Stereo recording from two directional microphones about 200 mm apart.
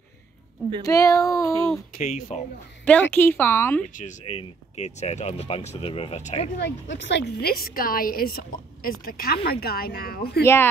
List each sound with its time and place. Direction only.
0.8 s a woman's voice: 15° left (ahead or behind)
2.0 s speech: 40° left (ahead or behind)
2.8 s a woman's voice: 5° left (ahead or behind)
3.8 s speech: 30° left (ahead or behind)
6.6 s a woman's voice: 60° left (ahead or behind)
10.4 s a woman's voice: 10° left (ahead or behind)